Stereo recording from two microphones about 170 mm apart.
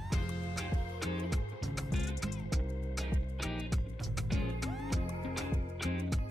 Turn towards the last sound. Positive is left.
turn(degrees=0)  # may be behind; listen again after turning